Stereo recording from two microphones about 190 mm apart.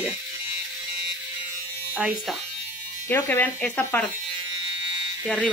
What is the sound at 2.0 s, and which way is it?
Speech, 5° right (ahead or behind).